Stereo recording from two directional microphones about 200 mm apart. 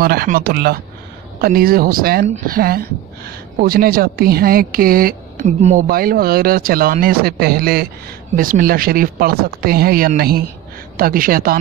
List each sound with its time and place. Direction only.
0.0 s speech: 50° right (ahead or behind)